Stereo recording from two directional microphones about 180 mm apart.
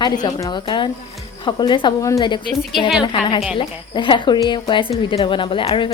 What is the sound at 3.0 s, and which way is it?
A woman's voice, 30° left (ahead or behind).